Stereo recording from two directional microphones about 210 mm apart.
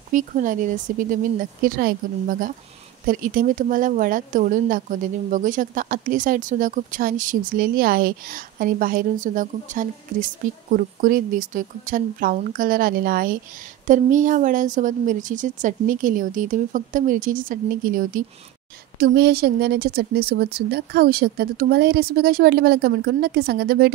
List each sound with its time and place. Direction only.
0.1 s a woman's voice: 40° right (ahead or behind)